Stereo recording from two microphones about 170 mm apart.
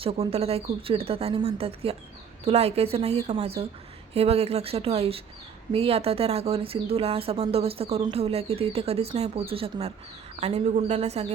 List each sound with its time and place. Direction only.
0.0 s speech: 35° right (ahead or behind)